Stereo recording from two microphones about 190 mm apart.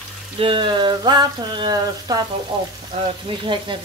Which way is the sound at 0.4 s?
25° right (ahead or behind).